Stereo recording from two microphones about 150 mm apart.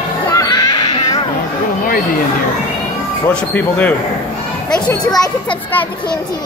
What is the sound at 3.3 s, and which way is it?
Speech, 10° left (ahead or behind).